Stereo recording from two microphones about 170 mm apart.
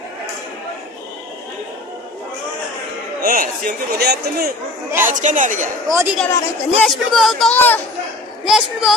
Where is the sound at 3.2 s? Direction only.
55° right (ahead or behind).